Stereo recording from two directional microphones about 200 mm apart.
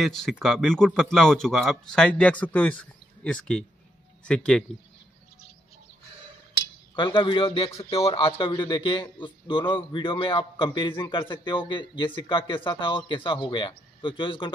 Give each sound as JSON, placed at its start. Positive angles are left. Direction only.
{"t": 0.0, "sound": "a man's voice", "side_deg": 0}
{"t": 7.0, "sound": "a man's voice", "side_deg": 25}